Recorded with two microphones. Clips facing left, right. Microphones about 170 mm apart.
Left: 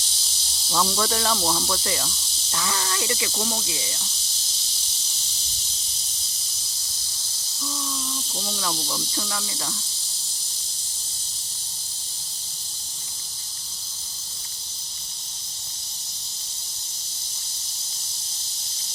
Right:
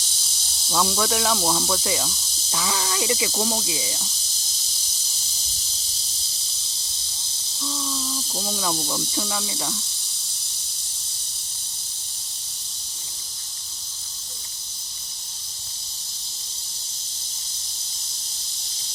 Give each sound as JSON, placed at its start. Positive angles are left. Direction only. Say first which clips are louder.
{"t": 0.7, "sound": "snake", "louder": "right 1 dB", "side_deg": -5}
{"t": 2.5, "sound": "speech", "louder": "right 2 dB", "side_deg": -15}
{"t": 8.4, "sound": "speech", "louder": "right 3 dB", "side_deg": -15}